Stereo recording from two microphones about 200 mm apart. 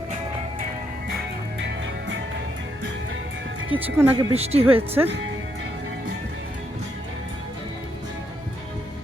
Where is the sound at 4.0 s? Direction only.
10° right (ahead or behind).